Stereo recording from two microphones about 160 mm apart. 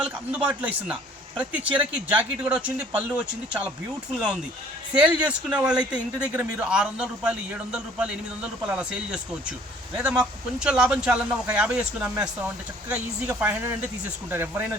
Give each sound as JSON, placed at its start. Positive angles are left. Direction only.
{"t": 0.0, "sound": "speech", "side_deg": -10}
{"t": 4.9, "sound": "speech", "side_deg": -10}